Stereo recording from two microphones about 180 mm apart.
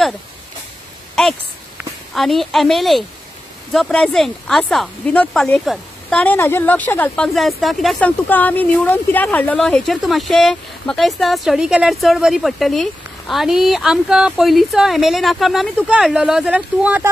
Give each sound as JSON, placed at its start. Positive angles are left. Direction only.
{"t": 1.8, "sound": "speech", "side_deg": 0}